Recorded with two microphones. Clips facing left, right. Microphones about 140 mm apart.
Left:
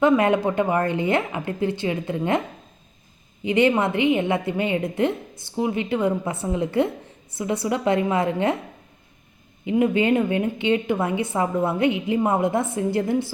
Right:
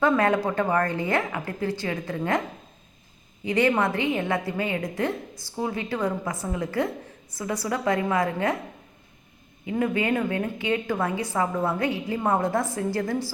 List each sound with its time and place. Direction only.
0.0 s a woman's voice: 20° left (ahead or behind)
3.4 s a woman's voice: 20° left (ahead or behind)
9.6 s a woman's voice: 20° left (ahead or behind)